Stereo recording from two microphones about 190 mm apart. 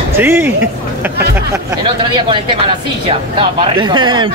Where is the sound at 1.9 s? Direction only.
25° right (ahead or behind).